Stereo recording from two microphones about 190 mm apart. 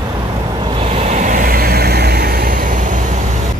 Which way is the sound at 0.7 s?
30° right (ahead or behind).